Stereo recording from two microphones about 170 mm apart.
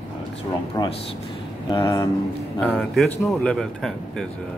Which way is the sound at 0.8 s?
25° left (ahead or behind).